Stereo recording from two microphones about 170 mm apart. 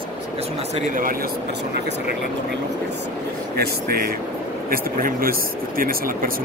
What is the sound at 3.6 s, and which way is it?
Speech, 65° right (ahead or behind).